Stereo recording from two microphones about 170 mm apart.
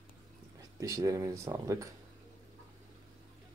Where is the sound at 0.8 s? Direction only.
20° right (ahead or behind).